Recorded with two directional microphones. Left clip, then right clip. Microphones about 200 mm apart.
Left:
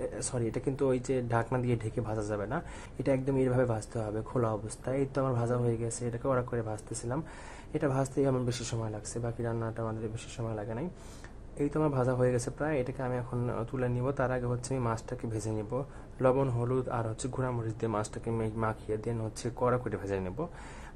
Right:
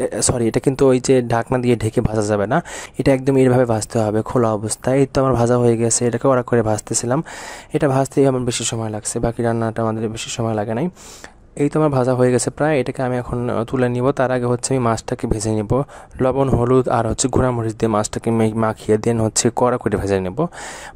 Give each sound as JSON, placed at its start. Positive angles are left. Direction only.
{"t": 0.0, "sound": "speech", "side_deg": -45}